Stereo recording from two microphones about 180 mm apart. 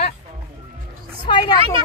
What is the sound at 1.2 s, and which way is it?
Speech, 25° left (ahead or behind).